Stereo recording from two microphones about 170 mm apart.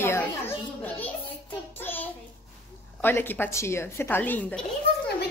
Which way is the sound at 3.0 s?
10° left (ahead or behind).